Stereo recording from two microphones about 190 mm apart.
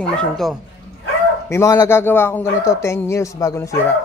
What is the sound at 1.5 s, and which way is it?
Speech, 15° left (ahead or behind).